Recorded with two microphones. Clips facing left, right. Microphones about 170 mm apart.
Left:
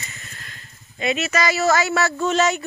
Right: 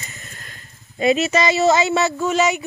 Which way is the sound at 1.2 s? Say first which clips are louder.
Right 4 dB; 25° right (ahead or behind).